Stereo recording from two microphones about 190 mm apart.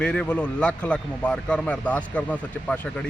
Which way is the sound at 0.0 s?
5° left (ahead or behind).